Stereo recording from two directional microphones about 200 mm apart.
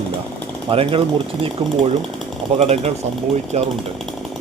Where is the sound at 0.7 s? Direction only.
25° right (ahead or behind).